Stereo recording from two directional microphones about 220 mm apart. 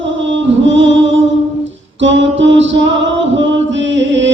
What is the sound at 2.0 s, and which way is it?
Music, 55° right (ahead or behind).